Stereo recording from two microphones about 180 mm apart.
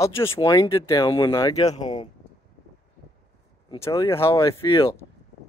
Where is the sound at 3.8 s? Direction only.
15° left (ahead or behind).